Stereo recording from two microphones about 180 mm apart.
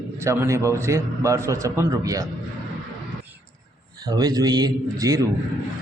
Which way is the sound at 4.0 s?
20° right (ahead or behind).